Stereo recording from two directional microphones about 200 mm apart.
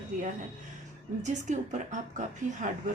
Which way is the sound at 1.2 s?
35° right (ahead or behind).